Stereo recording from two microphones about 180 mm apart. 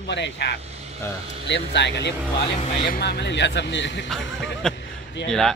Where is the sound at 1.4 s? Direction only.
75° left (ahead or behind).